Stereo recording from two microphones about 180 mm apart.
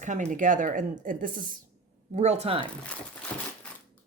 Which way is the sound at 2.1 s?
35° right (ahead or behind).